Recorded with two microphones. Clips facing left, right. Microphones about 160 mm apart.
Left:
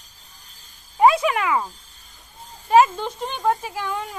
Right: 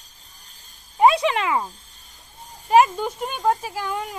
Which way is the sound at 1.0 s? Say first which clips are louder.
Even; 20° right (ahead or behind).